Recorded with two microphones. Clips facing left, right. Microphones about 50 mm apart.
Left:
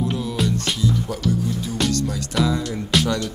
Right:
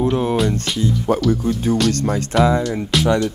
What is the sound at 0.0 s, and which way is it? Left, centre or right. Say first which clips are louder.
Music: right 7 dB; right.